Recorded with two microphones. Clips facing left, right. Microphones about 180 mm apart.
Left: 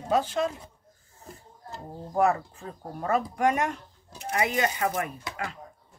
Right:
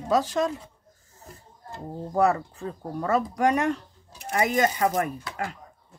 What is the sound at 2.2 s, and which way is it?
Speech, 35° right (ahead or behind).